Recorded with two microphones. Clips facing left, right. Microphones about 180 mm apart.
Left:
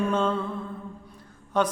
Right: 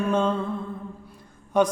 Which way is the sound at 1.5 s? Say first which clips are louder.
Right 4 dB; 10° right (ahead or behind).